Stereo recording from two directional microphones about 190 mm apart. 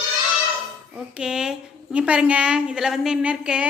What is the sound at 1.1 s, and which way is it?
A woman's voice, 5° right (ahead or behind).